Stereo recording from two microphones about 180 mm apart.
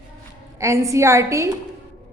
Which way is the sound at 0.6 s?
15° right (ahead or behind).